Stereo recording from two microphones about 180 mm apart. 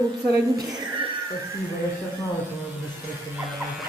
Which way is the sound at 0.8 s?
25° right (ahead or behind).